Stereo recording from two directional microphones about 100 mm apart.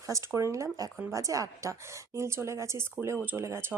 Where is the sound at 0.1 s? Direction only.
30° right (ahead or behind).